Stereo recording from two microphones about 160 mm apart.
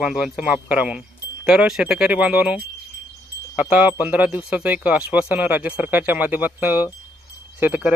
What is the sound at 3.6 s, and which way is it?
Speech, 10° right (ahead or behind).